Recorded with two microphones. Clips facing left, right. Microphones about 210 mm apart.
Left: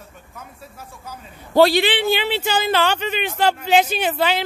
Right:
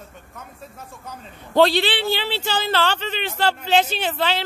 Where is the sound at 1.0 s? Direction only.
10° left (ahead or behind).